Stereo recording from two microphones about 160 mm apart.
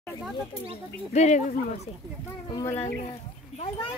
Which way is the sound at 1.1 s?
45° left (ahead or behind).